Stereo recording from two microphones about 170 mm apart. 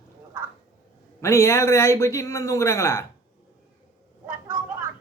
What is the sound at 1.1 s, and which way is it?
A man's voice, 15° left (ahead or behind).